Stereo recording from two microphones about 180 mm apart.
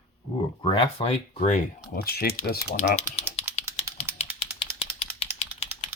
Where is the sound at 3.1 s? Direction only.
35° left (ahead or behind).